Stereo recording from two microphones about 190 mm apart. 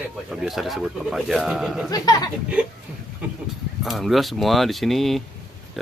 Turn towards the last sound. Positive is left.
turn(degrees=0)  # may be behind; listen again after turning